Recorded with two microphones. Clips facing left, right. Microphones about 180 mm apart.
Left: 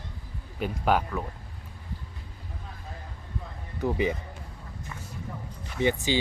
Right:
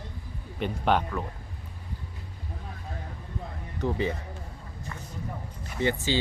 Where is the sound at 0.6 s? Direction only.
5° left (ahead or behind).